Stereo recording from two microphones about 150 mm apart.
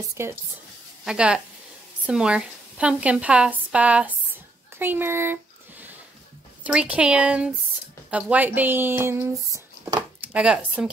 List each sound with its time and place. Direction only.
0.2 s a woman's voice: 15° right (ahead or behind)
1.0 s a woman's voice: 5° right (ahead or behind)
4.7 s a sound: 15° right (ahead or behind)
6.6 s a woman's voice: 10° right (ahead or behind); by 10.0 s 25° right (ahead or behind)
10.2 s a woman's voice: 5° right (ahead or behind)